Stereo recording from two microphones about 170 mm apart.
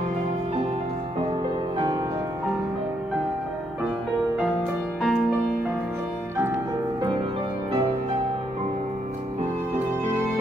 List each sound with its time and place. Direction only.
5.0 s music: centre (ahead or behind)